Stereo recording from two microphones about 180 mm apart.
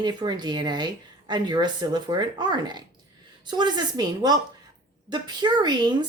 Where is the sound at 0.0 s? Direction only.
25° right (ahead or behind).